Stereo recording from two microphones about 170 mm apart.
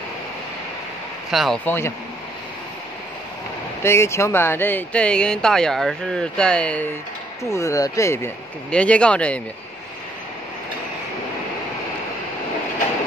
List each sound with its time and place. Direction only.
1.3 s speech: centre (ahead or behind)
1.7 s speech: 15° left (ahead or behind)
3.8 s speech: 15° left (ahead or behind)
7.5 s speech: 20° left (ahead or behind)